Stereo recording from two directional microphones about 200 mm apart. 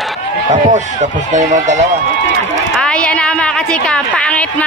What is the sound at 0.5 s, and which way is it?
Speech, 35° right (ahead or behind).